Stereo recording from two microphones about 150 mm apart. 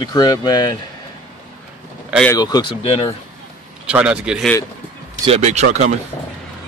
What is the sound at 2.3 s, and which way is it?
Speech, 25° left (ahead or behind).